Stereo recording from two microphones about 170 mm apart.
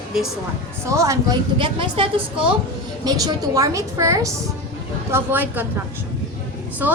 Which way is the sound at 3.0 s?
20° right (ahead or behind).